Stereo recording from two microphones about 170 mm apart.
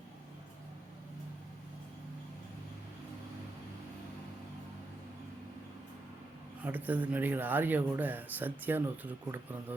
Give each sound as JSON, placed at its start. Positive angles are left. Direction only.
{"t": 6.6, "sound": "speech", "side_deg": -10}